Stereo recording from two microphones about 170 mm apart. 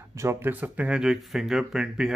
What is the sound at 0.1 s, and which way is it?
Speech, 15° right (ahead or behind).